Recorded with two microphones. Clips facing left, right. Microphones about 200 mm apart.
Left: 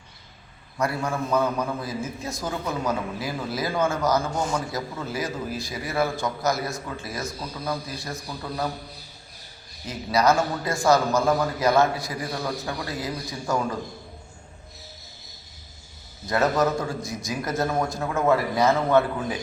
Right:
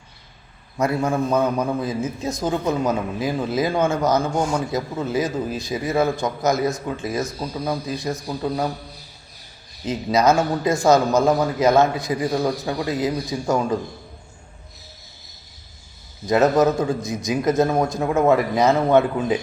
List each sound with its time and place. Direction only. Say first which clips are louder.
0.8 s a man's voice: right 6 dB; 20° right (ahead or behind)
9.8 s a man's voice: right 4 dB; 20° right (ahead or behind)
16.2 s a man's voice: right 6 dB; 20° right (ahead or behind)